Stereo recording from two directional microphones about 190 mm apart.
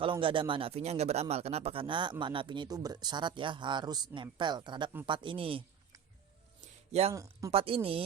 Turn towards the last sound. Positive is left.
turn(degrees=-30)  # may be behind; listen again after turning